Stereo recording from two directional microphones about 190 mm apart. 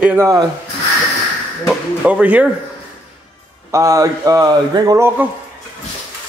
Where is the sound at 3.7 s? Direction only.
15° right (ahead or behind).